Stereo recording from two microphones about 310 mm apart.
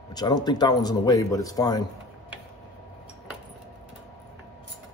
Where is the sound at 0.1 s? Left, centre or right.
Centre.